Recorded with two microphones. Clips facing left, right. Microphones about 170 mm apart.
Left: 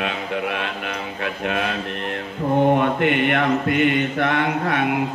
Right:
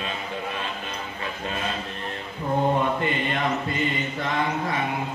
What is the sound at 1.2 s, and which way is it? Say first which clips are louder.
Mantra: left 7 dB; 70° left (ahead or behind).